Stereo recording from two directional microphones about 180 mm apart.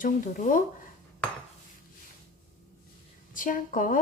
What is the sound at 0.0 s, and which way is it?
Speech, 45° left (ahead or behind).